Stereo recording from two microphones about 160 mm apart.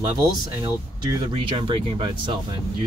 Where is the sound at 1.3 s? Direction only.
30° right (ahead or behind).